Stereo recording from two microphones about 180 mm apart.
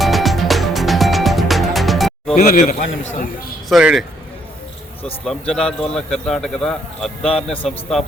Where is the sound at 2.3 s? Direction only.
50° left (ahead or behind).